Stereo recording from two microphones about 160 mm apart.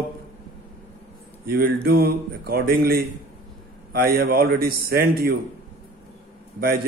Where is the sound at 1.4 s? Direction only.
70° right (ahead or behind).